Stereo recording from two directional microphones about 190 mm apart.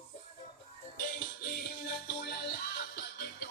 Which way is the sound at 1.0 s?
50° left (ahead or behind).